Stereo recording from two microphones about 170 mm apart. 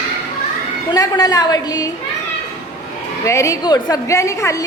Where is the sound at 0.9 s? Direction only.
20° left (ahead or behind).